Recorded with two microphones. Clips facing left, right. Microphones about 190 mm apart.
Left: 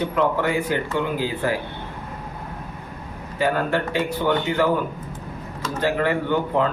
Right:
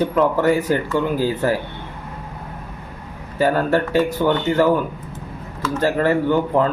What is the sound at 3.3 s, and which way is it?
A man's voice, 40° right (ahead or behind).